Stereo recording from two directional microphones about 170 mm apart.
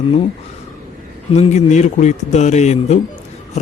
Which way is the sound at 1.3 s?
40° left (ahead or behind).